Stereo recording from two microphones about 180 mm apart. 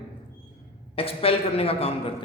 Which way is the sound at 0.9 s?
30° left (ahead or behind).